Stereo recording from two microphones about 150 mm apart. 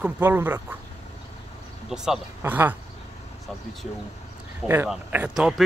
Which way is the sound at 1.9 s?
5° right (ahead or behind).